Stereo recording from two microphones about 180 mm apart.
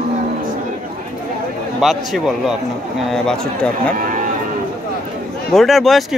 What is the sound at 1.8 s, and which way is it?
A man's voice, centre (ahead or behind).